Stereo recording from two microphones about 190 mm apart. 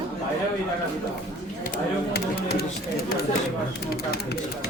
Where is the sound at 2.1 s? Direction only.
55° left (ahead or behind).